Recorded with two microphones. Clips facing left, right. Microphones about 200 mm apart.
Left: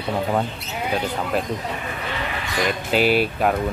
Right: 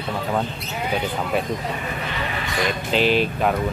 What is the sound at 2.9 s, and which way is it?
Speech, 5° left (ahead or behind).